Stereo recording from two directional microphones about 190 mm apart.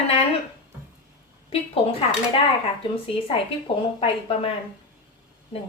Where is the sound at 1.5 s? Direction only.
30° left (ahead or behind).